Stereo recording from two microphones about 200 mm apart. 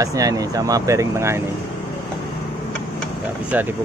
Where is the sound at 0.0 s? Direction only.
15° right (ahead or behind).